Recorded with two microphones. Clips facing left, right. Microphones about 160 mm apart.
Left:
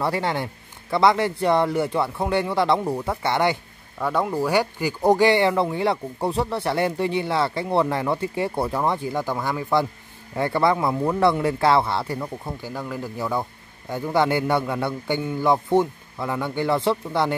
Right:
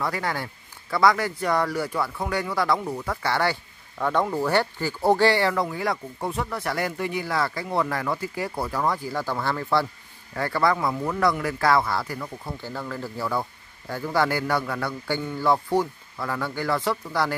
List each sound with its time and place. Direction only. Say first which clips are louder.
0.0 s speech: left 4 dB; 25° left (ahead or behind)
4.0 s speech: left 1 dB; 5° left (ahead or behind); by 17.4 s 25° left (ahead or behind)